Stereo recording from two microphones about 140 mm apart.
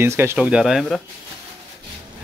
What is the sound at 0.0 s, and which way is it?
Speech, 15° right (ahead or behind).